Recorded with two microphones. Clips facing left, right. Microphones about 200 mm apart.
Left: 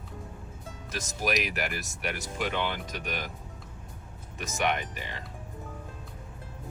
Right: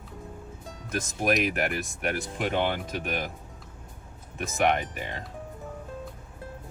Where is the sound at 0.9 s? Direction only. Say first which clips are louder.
Right 4 dB; 55° right (ahead or behind).